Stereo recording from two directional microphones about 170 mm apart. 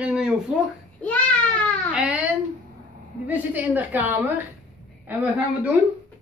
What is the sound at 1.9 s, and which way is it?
Speech, 5° right (ahead or behind).